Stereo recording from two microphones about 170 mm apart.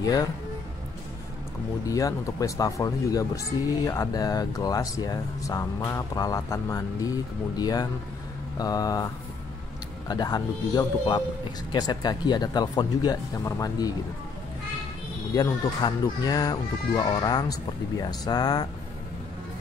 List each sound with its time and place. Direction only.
0.0 s speech: 20° left (ahead or behind)
1.9 s speech: 20° left (ahead or behind)
15.3 s speech: 20° left (ahead or behind)